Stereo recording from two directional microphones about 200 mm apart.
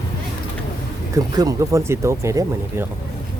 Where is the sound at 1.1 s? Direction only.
15° right (ahead or behind).